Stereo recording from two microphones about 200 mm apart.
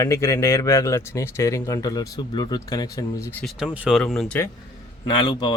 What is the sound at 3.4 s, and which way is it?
Speech, 5° right (ahead or behind).